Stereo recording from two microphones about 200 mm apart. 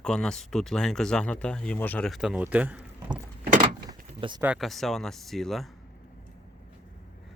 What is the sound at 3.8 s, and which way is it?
Keys jangling, 20° right (ahead or behind).